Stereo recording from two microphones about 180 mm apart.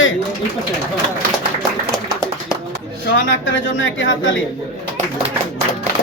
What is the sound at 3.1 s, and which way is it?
Speech, 90° left.